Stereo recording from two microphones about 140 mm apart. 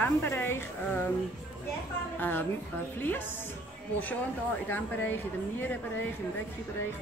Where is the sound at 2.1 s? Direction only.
15° left (ahead or behind).